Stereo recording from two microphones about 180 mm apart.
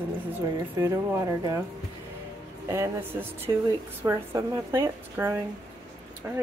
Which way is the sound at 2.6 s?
15° right (ahead or behind).